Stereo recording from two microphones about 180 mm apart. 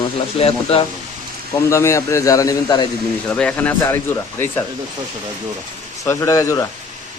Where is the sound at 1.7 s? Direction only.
15° left (ahead or behind).